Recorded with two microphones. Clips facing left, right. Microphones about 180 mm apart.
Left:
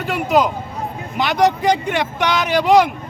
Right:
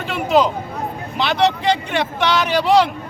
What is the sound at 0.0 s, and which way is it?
A man's voice, 15° left (ahead or behind).